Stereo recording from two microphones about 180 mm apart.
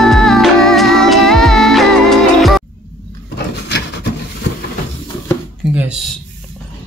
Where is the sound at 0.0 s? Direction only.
Centre (ahead or behind).